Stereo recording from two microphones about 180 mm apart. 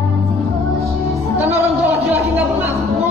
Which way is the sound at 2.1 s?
10° right (ahead or behind).